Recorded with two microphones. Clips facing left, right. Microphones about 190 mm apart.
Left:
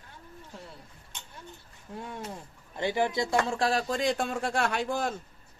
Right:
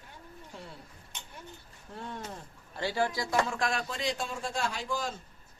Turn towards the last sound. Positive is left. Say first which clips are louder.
# left 5 dB
turn(degrees=60)  # may be behind; listen again after turning